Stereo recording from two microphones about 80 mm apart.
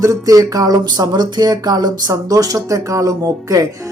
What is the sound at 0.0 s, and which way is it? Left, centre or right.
Music, right.